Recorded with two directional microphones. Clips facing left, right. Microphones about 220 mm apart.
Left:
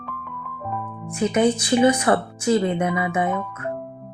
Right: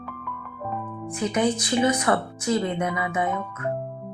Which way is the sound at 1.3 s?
25° left (ahead or behind).